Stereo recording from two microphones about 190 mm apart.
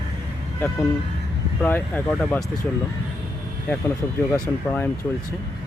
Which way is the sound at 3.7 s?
10° left (ahead or behind).